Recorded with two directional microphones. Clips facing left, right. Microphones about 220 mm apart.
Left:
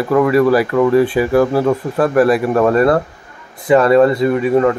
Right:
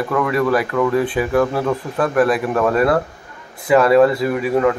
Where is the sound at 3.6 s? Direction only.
5° right (ahead or behind).